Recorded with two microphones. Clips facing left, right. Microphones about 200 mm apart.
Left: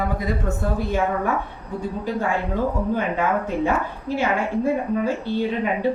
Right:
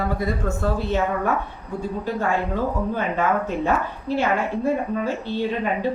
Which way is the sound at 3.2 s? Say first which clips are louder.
Even; 15° left (ahead or behind).